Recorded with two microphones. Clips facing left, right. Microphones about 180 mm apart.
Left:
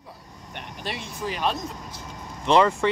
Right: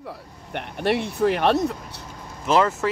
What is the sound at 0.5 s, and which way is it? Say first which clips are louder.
Speech: right 11 dB; 60° right (ahead or behind).